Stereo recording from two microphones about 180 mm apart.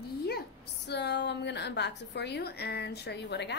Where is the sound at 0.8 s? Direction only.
70° left (ahead or behind).